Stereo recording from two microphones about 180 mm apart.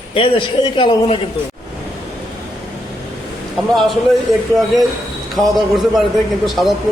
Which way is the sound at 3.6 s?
Centre (ahead or behind).